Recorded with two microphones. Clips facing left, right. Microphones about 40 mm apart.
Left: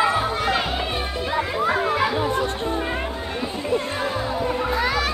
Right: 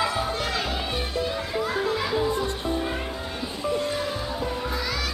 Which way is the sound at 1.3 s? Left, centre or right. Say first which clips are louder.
Left 5 dB; left.